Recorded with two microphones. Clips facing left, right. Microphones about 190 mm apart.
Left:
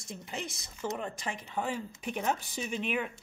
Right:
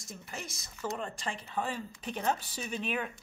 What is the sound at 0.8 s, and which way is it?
Speech, 10° left (ahead or behind).